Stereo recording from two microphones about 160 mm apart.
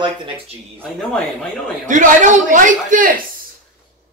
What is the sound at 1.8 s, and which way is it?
A man's voice, 50° right (ahead or behind).